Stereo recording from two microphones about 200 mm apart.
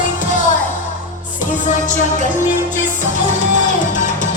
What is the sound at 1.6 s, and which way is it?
Music, 40° left (ahead or behind).